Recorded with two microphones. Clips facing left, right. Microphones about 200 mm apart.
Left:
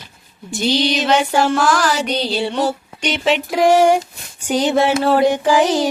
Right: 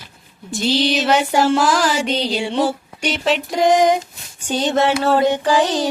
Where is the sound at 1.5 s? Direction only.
20° right (ahead or behind).